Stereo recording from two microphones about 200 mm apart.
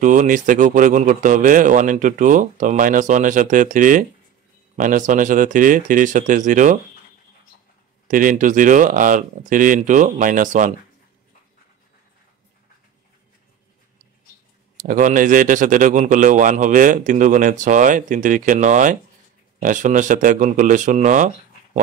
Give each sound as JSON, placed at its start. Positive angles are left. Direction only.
{"t": 0.0, "sound": "speech", "side_deg": -40}
{"t": 8.1, "sound": "speech", "side_deg": -40}
{"t": 14.8, "sound": "speech", "side_deg": -40}